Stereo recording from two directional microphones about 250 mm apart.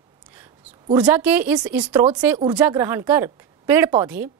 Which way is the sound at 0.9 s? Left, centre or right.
Centre.